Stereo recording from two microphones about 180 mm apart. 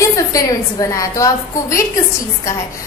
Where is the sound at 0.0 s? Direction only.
20° left (ahead or behind).